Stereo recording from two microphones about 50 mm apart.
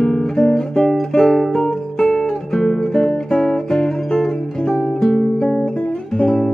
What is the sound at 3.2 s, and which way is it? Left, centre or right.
Music, centre.